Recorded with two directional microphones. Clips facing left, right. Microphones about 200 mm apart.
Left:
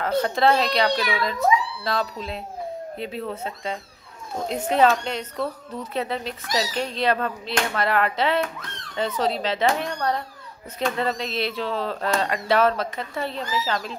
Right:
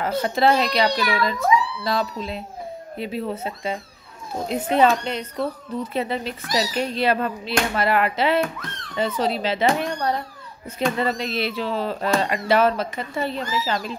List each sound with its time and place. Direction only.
0.0 s speech: 5° right (ahead or behind)